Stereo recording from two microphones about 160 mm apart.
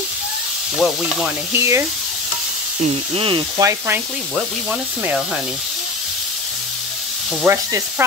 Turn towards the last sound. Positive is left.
turn(degrees=-20)  # may be behind; listen again after turning